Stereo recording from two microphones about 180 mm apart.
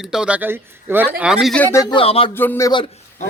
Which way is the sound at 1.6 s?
20° left (ahead or behind).